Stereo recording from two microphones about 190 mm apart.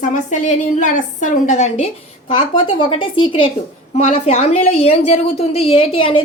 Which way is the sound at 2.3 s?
25° left (ahead or behind).